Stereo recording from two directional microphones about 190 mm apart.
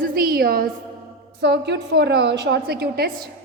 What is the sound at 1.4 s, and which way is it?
A woman's voice, 65° right (ahead or behind).